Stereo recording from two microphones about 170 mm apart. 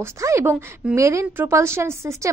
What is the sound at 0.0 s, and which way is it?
A woman's voice, 15° right (ahead or behind).